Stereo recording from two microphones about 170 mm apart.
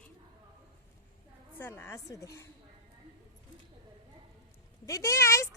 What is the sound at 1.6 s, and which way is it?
Speech, 10° left (ahead or behind).